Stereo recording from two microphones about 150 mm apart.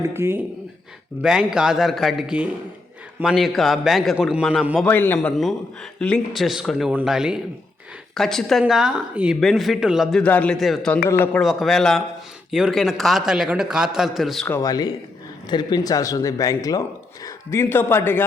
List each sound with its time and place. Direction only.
0.0 s speech: 15° right (ahead or behind)
1.2 s speech: 5° right (ahead or behind)
4.8 s a man's voice: 15° left (ahead or behind)
14.4 s a man's voice: 15° left (ahead or behind)
14.7 s a man's voice: 25° left (ahead or behind)